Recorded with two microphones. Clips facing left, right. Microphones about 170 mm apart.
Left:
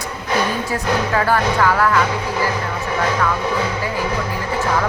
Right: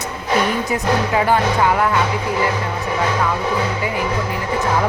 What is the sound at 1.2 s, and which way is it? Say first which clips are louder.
Music: even; 20° right (ahead or behind).